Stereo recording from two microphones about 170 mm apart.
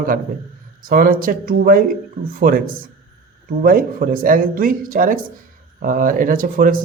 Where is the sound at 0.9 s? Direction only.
55° right (ahead or behind).